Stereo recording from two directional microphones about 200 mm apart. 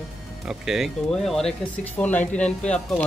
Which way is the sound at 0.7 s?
Centre (ahead or behind).